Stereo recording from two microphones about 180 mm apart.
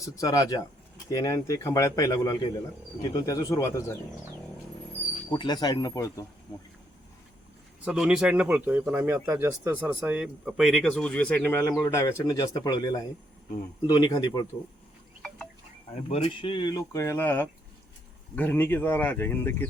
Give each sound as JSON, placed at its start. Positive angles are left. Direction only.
{"t": 0.0, "sound": "speech", "side_deg": 20}
{"t": 5.3, "sound": "speech", "side_deg": 25}
{"t": 7.9, "sound": "speech", "side_deg": -5}
{"t": 16.0, "sound": "speech", "side_deg": 35}